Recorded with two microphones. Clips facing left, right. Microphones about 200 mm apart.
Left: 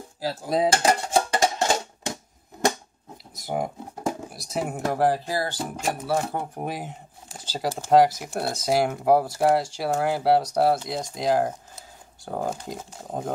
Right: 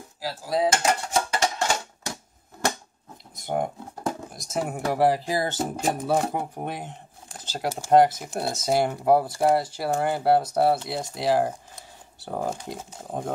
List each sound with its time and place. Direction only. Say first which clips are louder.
0.2 s dishes: left 1 dB; 25° left (ahead or behind)
1.6 s music: left 3 dB; 20° left (ahead or behind)
3.3 s speech: right 1 dB; centre (ahead or behind)
4.9 s speech: right 2 dB; 10° right (ahead or behind)
6.3 s speech: even; centre (ahead or behind)